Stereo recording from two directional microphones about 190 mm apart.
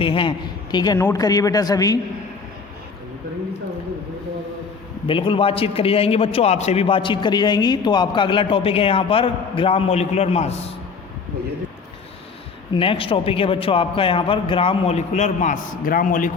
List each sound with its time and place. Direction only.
0.0 s a man's voice: 25° left (ahead or behind)
5.0 s a man's voice: 25° left (ahead or behind)
12.7 s a man's voice: 30° left (ahead or behind); by 16.3 s 45° left (ahead or behind)